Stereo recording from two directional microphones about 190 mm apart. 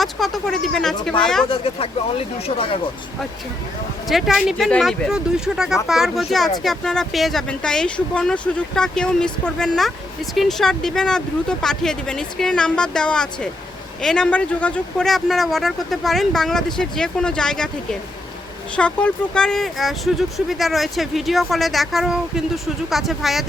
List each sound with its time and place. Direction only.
0.0 s speech: centre (ahead or behind)
1.5 s speech: 30° left (ahead or behind)
4.1 s speech: centre (ahead or behind)
18.8 s speech: 5° left (ahead or behind)